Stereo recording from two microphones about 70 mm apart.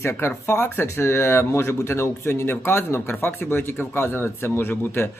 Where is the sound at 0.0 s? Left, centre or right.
Left.